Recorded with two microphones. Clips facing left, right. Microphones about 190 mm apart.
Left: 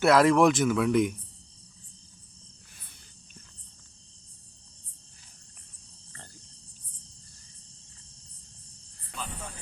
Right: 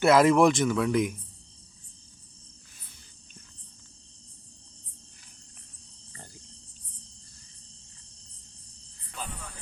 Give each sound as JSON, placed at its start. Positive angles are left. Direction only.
{"t": 0.0, "sound": "speech", "side_deg": 0}